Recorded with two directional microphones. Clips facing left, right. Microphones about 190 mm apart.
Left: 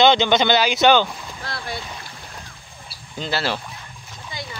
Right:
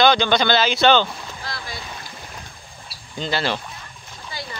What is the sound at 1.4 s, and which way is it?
Boat, 60° left (ahead or behind).